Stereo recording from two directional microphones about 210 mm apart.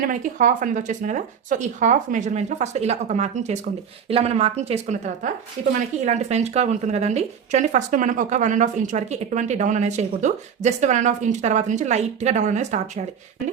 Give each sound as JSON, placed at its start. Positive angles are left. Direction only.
{"t": 0.1, "sound": "speech", "side_deg": -40}